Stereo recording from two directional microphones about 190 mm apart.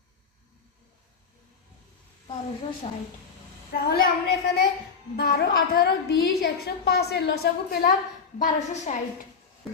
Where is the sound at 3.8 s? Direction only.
55° left (ahead or behind).